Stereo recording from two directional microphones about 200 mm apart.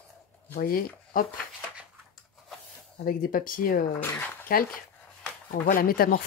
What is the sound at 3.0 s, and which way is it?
Speech, 45° left (ahead or behind).